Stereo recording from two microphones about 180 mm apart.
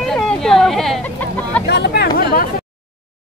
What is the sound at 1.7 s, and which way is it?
Speech, 70° left (ahead or behind).